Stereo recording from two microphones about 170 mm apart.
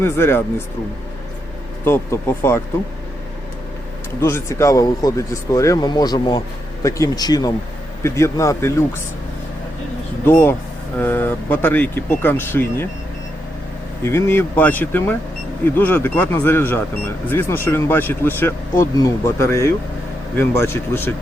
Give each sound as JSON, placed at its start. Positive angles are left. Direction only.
{"t": 0.0, "sound": "speech", "side_deg": 15}
{"t": 1.8, "sound": "speech", "side_deg": 15}
{"t": 4.2, "sound": "speech", "side_deg": 15}
{"t": 10.2, "sound": "speech", "side_deg": 15}
{"t": 14.0, "sound": "speech", "side_deg": 15}